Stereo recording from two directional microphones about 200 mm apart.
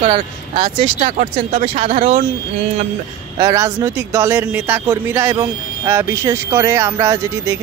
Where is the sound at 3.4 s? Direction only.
15° right (ahead or behind).